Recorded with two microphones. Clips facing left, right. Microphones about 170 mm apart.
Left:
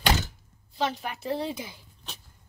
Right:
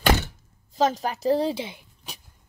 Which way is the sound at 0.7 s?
40° right (ahead or behind).